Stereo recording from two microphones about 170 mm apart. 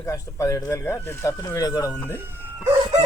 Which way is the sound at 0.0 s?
20° left (ahead or behind).